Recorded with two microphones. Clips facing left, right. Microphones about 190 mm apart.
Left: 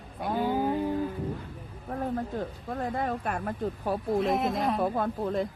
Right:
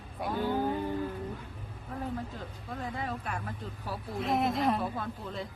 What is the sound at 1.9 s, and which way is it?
Speech, 55° left (ahead or behind).